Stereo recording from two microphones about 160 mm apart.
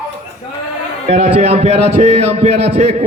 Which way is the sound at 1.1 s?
45° right (ahead or behind).